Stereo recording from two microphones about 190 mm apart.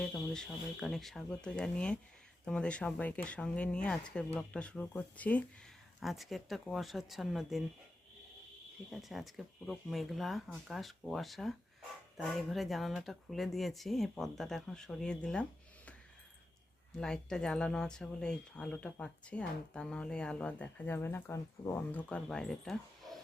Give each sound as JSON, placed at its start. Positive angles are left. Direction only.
{"t": 0.0, "sound": "speech", "side_deg": 5}
{"t": 8.9, "sound": "speech", "side_deg": 0}
{"t": 17.0, "sound": "speech", "side_deg": 5}